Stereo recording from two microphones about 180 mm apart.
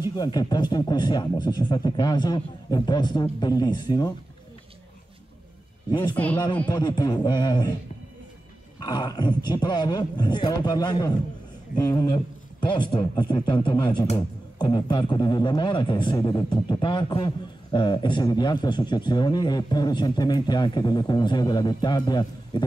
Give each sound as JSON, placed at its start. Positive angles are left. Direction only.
{"t": 0.1, "sound": "speech", "side_deg": 20}
{"t": 5.9, "sound": "speech", "side_deg": 25}
{"t": 8.7, "sound": "speech", "side_deg": 25}